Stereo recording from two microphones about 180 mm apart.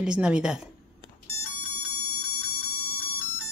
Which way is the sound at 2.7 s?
55° right (ahead or behind).